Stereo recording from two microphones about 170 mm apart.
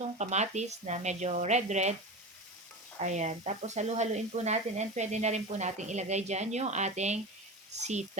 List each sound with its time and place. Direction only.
0.2 s speech: 40° right (ahead or behind)
3.0 s speech: 45° right (ahead or behind)